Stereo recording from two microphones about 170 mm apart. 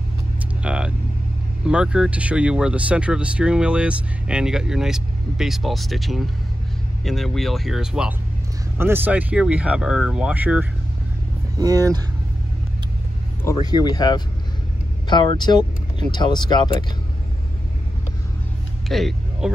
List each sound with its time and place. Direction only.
0.6 s vehicle: 5° right (ahead or behind)
1.7 s speech: 5° right (ahead or behind)
11.5 s speech: 20° right (ahead or behind)
13.4 s speech: 20° left (ahead or behind)
18.9 s vehicle: centre (ahead or behind)